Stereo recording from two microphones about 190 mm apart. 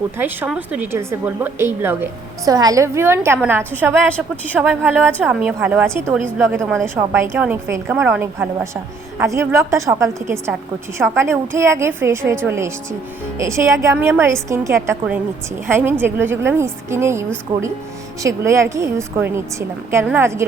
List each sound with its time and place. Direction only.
0.2 s a woman's voice: 10° right (ahead or behind)